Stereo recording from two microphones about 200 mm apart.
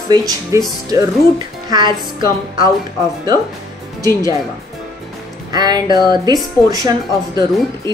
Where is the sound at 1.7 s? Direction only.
20° right (ahead or behind).